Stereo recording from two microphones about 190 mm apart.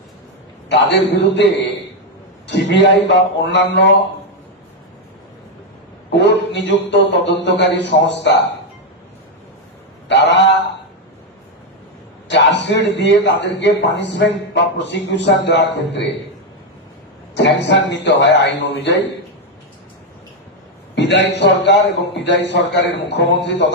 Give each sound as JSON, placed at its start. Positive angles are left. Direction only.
{"t": 0.7, "sound": "a man's voice", "side_deg": 65}
{"t": 2.5, "sound": "a man's voice", "side_deg": 65}
{"t": 6.1, "sound": "a man's voice", "side_deg": 65}
{"t": 10.1, "sound": "a man's voice", "side_deg": 65}
{"t": 12.3, "sound": "a man's voice", "side_deg": 65}
{"t": 17.3, "sound": "a man's voice", "side_deg": 70}
{"t": 20.9, "sound": "a man's voice", "side_deg": 65}